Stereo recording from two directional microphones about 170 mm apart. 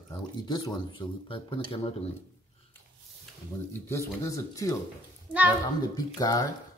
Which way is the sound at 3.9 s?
20° left (ahead or behind).